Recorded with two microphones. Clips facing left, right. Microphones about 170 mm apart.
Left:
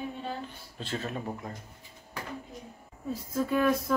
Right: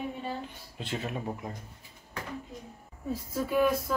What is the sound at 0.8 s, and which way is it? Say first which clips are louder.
Speech: even; 15° right (ahead or behind).